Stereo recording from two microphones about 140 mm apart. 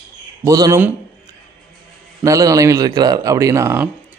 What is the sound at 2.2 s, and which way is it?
A man's voice, 25° right (ahead or behind).